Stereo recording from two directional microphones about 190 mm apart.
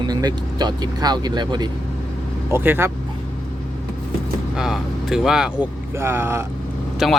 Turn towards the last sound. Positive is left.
turn(degrees=0)  # may be behind; listen again after turning